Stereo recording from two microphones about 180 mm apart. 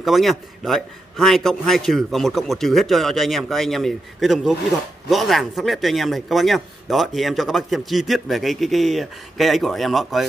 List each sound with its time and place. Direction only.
0.0 s speech: centre (ahead or behind)